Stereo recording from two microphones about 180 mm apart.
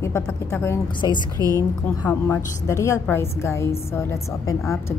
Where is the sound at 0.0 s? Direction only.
15° left (ahead or behind).